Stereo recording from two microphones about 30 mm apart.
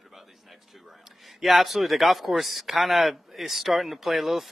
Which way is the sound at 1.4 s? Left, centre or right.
Centre.